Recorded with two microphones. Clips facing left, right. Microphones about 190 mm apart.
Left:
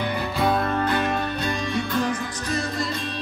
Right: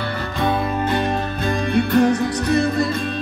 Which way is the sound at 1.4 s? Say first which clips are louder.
Right 6 dB; 55° right (ahead or behind).